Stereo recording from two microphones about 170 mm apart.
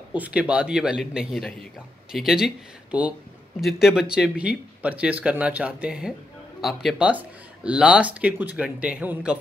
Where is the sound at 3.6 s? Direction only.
Centre (ahead or behind).